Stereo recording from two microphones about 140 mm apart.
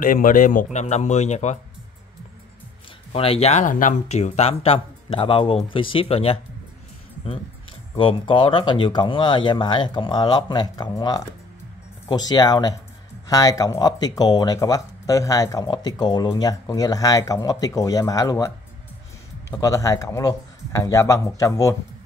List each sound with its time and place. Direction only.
0.0 s a man's voice: 75° left (ahead or behind)
0.7 s a man's voice: 55° left (ahead or behind)
3.1 s speech: 45° left (ahead or behind)
8.0 s speech: 40° left (ahead or behind)
19.5 s speech: 25° left (ahead or behind)